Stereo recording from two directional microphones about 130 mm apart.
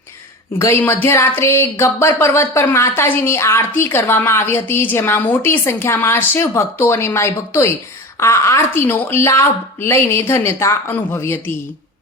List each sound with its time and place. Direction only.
0.6 s speech: 20° left (ahead or behind)